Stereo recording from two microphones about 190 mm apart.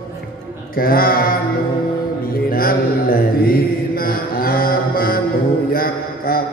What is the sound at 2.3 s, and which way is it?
Mantra, 50° left (ahead or behind).